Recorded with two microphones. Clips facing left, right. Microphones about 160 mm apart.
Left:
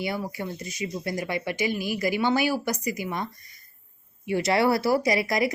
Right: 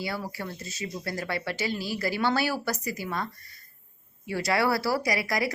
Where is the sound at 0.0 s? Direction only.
20° left (ahead or behind).